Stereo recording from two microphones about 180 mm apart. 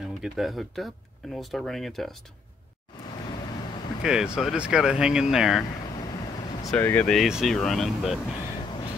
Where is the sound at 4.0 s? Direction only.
5° right (ahead or behind).